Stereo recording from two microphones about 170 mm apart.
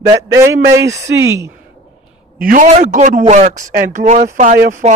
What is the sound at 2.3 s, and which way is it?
A man's voice, 55° right (ahead or behind).